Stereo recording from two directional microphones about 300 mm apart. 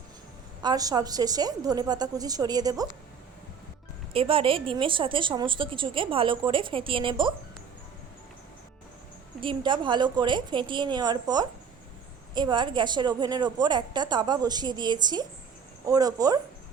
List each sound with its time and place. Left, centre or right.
0.6 s a woman's voice: centre
4.1 s a woman's voice: centre
9.4 s a woman's voice: centre